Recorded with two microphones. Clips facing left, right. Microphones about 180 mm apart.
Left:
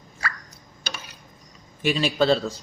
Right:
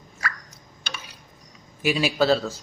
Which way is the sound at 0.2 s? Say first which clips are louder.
Even; 30° left (ahead or behind).